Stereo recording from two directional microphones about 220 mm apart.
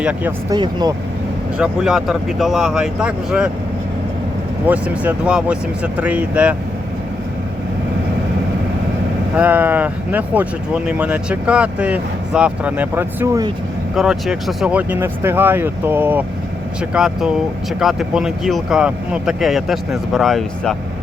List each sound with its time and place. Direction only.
0.0 s speech: 5° right (ahead or behind)
0.5 s speech: 20° right (ahead or behind)
1.5 s speech: 5° right (ahead or behind)
4.6 s speech: 5° right (ahead or behind)
9.3 s speech: 5° right (ahead or behind)
13.9 s speech: 5° right (ahead or behind)